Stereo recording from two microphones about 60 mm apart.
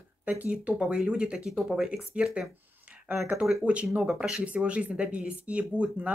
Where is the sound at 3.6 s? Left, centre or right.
Centre.